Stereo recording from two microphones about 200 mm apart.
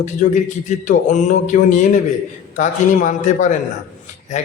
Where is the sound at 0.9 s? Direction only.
35° left (ahead or behind).